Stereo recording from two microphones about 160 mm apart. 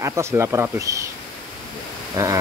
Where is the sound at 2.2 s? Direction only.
20° right (ahead or behind).